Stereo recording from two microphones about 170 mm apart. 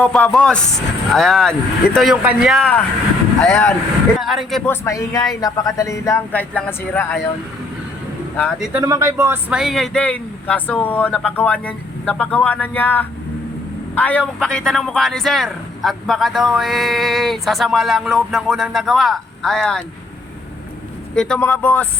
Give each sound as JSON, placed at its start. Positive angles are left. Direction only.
{"t": 0.0, "sound": "a man's voice", "side_deg": 5}
{"t": 4.2, "sound": "a man's voice", "side_deg": 0}
{"t": 4.6, "sound": "speech", "side_deg": 15}
{"t": 8.7, "sound": "a man's voice", "side_deg": -15}
{"t": 21.2, "sound": "speech", "side_deg": 5}